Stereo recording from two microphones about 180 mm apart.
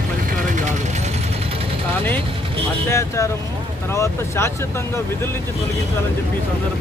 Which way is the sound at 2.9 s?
15° left (ahead or behind).